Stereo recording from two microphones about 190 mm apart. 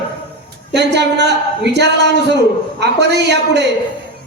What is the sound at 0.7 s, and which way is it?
A man's voice, 60° right (ahead or behind).